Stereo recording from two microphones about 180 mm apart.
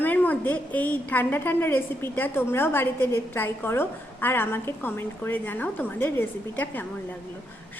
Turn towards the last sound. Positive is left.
turn(degrees=10)  # may be behind; listen again after turning